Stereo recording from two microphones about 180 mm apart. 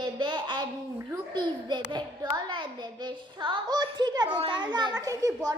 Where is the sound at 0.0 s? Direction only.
25° right (ahead or behind).